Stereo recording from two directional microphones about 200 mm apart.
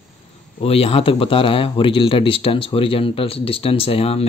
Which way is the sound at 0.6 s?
30° left (ahead or behind).